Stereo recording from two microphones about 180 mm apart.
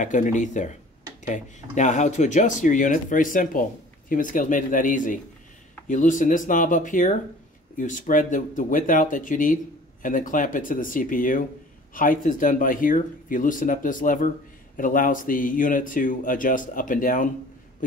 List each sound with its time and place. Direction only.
0.0 s speech: 45° left (ahead or behind)